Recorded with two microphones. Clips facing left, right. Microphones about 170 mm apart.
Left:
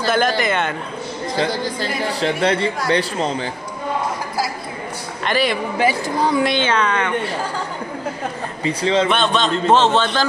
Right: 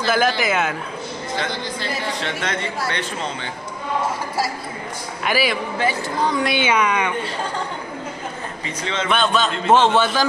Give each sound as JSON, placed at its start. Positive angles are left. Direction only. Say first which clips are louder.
{"t": 0.4, "sound": "a man's voice", "louder": "left 1 dB", "side_deg": -5}
{"t": 1.3, "sound": "a man's voice", "louder": "left 6 dB", "side_deg": 35}
{"t": 5.2, "sound": "a man's voice", "louder": "left 2 dB", "side_deg": -5}
{"t": 5.8, "sound": "a woman's voice", "louder": "left 4 dB", "side_deg": 10}
{"t": 6.4, "sound": "speech", "louder": "left 1 dB", "side_deg": -10}
{"t": 8.6, "sound": "a man's voice", "louder": "left 9 dB", "side_deg": 35}
{"t": 9.1, "sound": "a man's voice", "louder": "left 1 dB", "side_deg": 0}